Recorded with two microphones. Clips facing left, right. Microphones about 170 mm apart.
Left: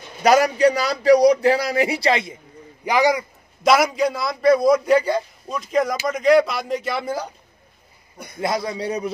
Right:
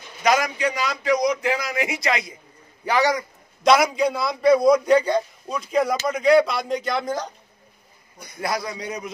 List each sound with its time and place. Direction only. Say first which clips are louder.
0.2 s a man's voice: left 6 dB; 35° left (ahead or behind)
2.8 s a man's voice: left 2 dB; 15° left (ahead or behind)
8.4 s a man's voice: left 4 dB; 25° left (ahead or behind)